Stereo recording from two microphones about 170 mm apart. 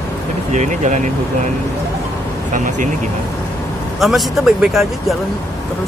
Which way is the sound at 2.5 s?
50° right (ahead or behind).